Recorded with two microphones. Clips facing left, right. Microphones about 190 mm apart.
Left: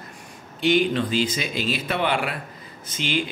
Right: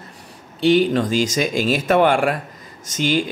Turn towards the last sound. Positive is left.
turn(degrees=-40)  # may be behind; listen again after turning